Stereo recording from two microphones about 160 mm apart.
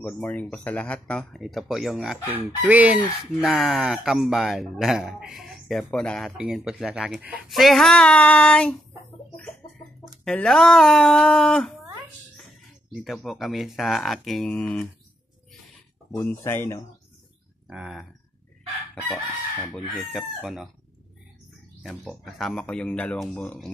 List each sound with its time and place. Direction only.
0.0 s speech: 10° left (ahead or behind)
10.2 s speech: 5° left (ahead or behind)
12.9 s speech: centre (ahead or behind)
16.2 s chicken: 15° left (ahead or behind)
17.6 s speech: 5° right (ahead or behind)
19.0 s chicken: 15° left (ahead or behind)
19.7 s speech: centre (ahead or behind)
21.8 s speech: centre (ahead or behind)